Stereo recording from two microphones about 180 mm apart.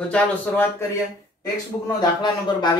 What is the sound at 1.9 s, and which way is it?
Speech, 25° left (ahead or behind).